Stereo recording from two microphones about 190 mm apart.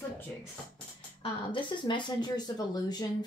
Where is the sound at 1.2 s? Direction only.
25° left (ahead or behind).